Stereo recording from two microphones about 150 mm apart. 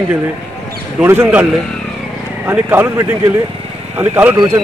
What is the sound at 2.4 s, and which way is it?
A man's voice, 10° right (ahead or behind).